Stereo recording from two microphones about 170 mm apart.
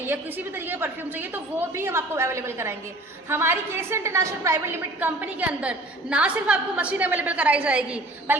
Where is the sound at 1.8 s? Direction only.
15° right (ahead or behind).